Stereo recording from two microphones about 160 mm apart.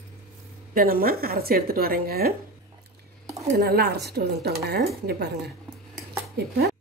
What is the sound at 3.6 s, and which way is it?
A woman's voice, 85° right.